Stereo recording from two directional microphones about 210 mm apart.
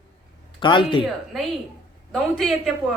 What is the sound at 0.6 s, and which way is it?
Speech, 25° left (ahead or behind).